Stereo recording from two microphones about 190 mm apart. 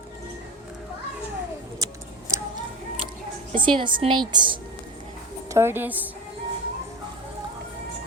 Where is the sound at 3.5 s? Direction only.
25° right (ahead or behind).